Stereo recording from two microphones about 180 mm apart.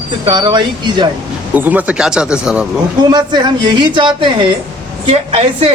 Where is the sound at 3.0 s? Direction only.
25° right (ahead or behind).